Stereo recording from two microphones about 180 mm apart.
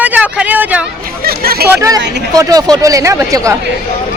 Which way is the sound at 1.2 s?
55° right (ahead or behind).